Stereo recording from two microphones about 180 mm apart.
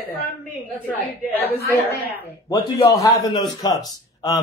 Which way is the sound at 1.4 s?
60° left (ahead or behind).